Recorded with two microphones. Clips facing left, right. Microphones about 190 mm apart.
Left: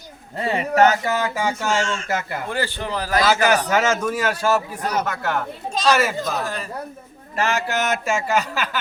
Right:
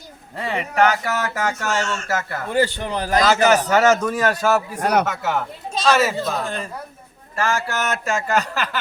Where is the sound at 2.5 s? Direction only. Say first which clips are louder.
Right 6 dB; 20° right (ahead or behind).